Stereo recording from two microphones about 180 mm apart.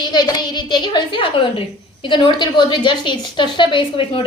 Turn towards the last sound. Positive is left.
turn(degrees=30)  # may be behind; listen again after turning